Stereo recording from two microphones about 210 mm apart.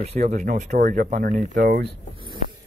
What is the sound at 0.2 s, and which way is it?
Speech, 35° right (ahead or behind).